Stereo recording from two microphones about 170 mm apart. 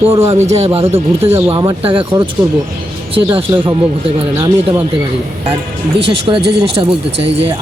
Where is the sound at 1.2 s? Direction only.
15° right (ahead or behind).